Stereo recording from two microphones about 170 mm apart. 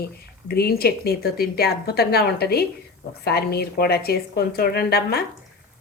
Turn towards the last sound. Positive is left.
turn(degrees=70)  # may be behind; listen again after turning